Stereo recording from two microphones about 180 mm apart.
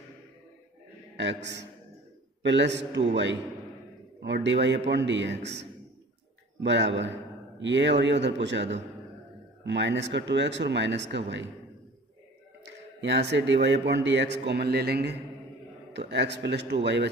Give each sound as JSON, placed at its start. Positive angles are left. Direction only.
{"t": 1.1, "sound": "a man's voice", "side_deg": -75}
{"t": 4.2, "sound": "a man's voice", "side_deg": -75}
{"t": 12.6, "sound": "a man's voice", "side_deg": -75}